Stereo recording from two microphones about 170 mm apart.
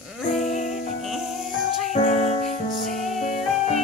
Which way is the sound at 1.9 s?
45° left (ahead or behind).